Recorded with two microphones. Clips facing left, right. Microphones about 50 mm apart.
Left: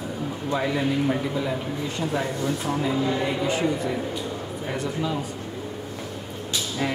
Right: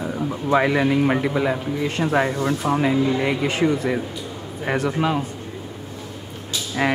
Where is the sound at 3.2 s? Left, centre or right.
Right.